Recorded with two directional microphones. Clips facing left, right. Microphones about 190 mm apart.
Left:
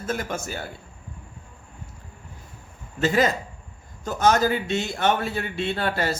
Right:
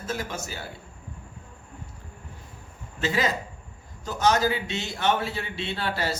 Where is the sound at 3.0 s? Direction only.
50° left (ahead or behind).